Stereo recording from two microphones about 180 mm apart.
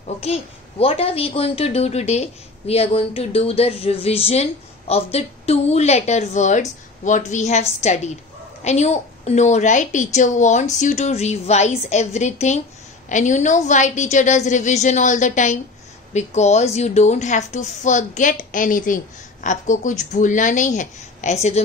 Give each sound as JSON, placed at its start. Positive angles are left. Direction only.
{"t": 0.0, "sound": "a child's voice", "side_deg": 35}